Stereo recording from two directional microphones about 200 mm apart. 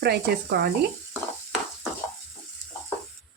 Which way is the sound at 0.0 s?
55° right (ahead or behind).